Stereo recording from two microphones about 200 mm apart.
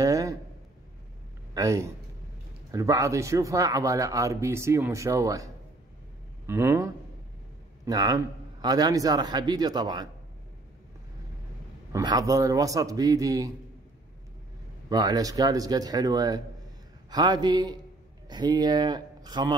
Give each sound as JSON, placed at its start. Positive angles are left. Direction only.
{"t": 0.0, "sound": "a sound", "side_deg": -15}
{"t": 1.5, "sound": "a man's voice", "side_deg": -15}
{"t": 11.9, "sound": "speech", "side_deg": -20}
{"t": 14.9, "sound": "a man's voice", "side_deg": -20}